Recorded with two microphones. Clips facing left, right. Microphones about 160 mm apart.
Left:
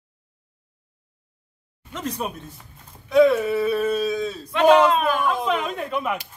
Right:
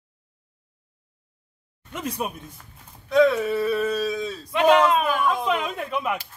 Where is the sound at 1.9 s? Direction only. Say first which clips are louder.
Left 1 dB; 10° right (ahead or behind).